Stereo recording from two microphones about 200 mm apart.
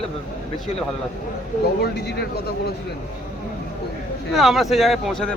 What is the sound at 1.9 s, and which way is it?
Speech, 55° left (ahead or behind).